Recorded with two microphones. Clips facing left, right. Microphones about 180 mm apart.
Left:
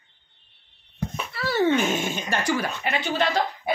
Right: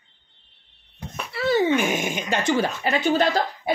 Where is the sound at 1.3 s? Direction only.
20° right (ahead or behind).